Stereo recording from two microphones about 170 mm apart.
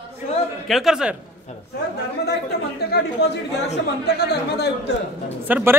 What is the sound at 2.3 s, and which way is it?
Speech, 70° left (ahead or behind).